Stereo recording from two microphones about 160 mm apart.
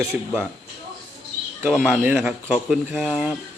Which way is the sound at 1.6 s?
10° right (ahead or behind).